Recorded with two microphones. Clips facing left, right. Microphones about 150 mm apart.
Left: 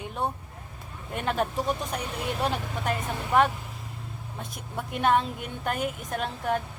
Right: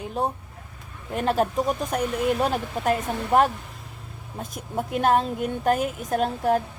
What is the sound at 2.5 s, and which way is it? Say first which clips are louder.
Speech: right 5 dB; 40° right (ahead or behind).